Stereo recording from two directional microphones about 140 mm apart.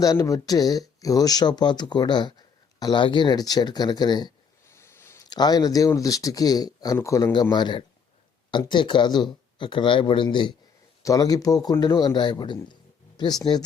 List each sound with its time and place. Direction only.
0.0 s speech: 25° left (ahead or behind)
4.7 s speech: 20° left (ahead or behind); by 10.5 s 35° left (ahead or behind)
11.0 s speech: 25° left (ahead or behind)